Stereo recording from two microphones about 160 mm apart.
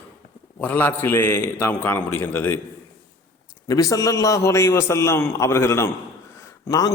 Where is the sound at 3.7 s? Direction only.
20° left (ahead or behind).